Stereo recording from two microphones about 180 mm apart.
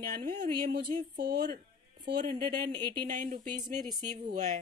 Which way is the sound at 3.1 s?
45° right (ahead or behind).